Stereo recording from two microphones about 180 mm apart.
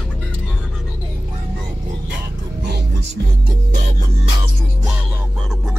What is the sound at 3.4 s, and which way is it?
Music, 45° right (ahead or behind).